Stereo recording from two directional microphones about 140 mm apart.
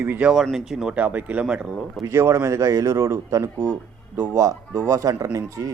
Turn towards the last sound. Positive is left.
turn(degrees=-25)  # may be behind; listen again after turning